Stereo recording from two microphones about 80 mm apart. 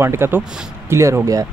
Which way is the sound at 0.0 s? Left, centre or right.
Right.